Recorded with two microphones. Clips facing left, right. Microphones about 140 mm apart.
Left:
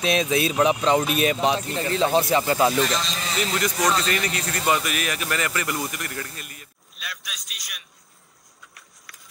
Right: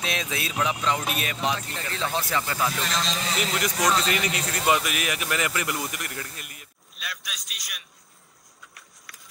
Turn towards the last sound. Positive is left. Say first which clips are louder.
# even
turn(degrees=0)  # may be behind; listen again after turning